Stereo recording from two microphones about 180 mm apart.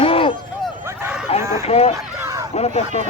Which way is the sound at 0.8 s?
10° right (ahead or behind).